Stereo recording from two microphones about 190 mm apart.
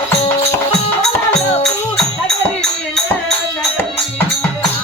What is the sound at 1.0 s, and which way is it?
Music, 5° left (ahead or behind).